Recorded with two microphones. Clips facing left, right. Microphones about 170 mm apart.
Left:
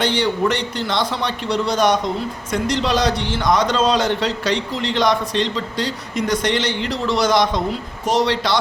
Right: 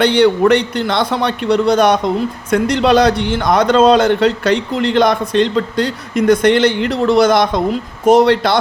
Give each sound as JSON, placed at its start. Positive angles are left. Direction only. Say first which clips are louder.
{"t": 0.0, "sound": "a man's voice", "louder": "right 8 dB", "side_deg": -60}